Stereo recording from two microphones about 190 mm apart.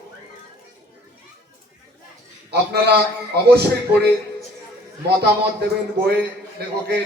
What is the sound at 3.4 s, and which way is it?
Speech, 60° right (ahead or behind).